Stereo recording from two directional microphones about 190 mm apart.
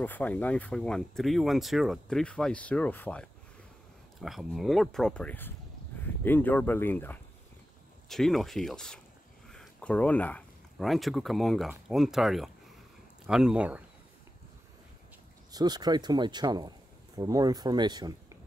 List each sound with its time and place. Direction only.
0.0 s speech: 10° left (ahead or behind); by 13.8 s 5° right (ahead or behind)
15.5 s speech: 20° right (ahead or behind)